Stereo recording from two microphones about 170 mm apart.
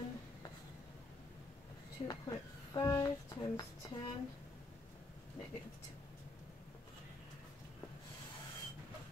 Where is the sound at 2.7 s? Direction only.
25° left (ahead or behind).